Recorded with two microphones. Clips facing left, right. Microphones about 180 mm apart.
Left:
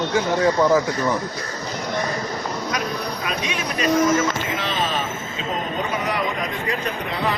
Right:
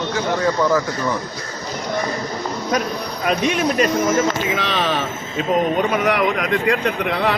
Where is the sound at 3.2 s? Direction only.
55° right (ahead or behind).